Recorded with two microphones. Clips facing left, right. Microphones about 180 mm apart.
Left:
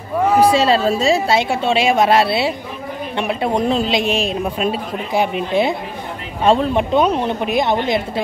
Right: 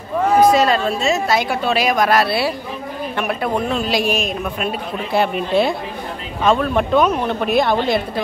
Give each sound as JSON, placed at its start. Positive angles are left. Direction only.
{"t": 0.4, "sound": "a woman's voice", "side_deg": 30}
{"t": 3.8, "sound": "a woman's voice", "side_deg": 20}
{"t": 5.1, "sound": "speech", "side_deg": 15}
{"t": 6.4, "sound": "speech", "side_deg": 30}
{"t": 6.7, "sound": "speech", "side_deg": 20}